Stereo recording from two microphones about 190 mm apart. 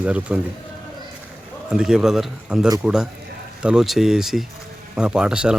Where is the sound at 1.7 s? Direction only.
5° right (ahead or behind).